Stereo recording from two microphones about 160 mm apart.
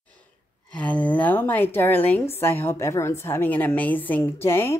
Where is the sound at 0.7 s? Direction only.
10° left (ahead or behind).